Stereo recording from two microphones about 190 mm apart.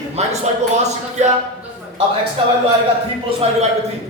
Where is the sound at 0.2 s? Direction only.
35° right (ahead or behind).